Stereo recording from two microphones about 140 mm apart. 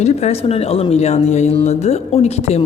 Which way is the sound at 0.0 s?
50° left (ahead or behind).